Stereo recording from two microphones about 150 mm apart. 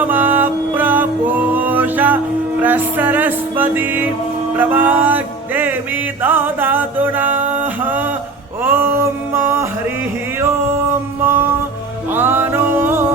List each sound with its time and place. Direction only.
0.1 s music: 10° right (ahead or behind)
8.6 s a sound: 15° right (ahead or behind)
11.2 s music: 15° right (ahead or behind)